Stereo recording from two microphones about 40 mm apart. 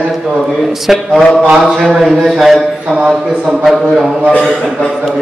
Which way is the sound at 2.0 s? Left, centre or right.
Centre.